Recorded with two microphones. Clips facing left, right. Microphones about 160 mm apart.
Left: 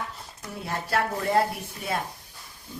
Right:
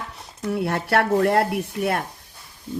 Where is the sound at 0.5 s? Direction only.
70° right (ahead or behind).